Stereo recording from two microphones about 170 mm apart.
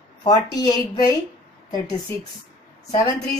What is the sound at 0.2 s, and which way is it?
Speech, 25° left (ahead or behind).